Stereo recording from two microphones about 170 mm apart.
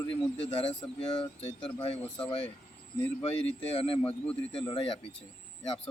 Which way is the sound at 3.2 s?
35° left (ahead or behind).